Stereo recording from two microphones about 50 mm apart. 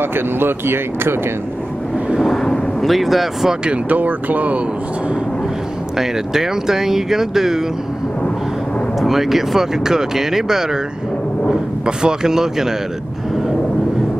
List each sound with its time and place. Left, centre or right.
0.0 s speech: right
2.1 s vehicle: centre
2.8 s speech: centre
3.6 s speech: right
5.9 s speech: centre
9.0 s speech: centre
11.8 s speech: centre